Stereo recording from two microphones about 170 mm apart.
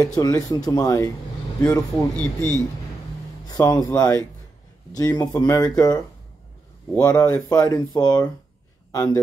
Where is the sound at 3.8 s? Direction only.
20° left (ahead or behind).